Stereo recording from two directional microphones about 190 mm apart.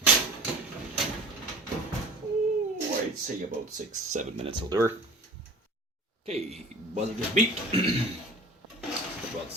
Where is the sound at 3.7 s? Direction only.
40° right (ahead or behind); by 4.9 s 20° right (ahead or behind).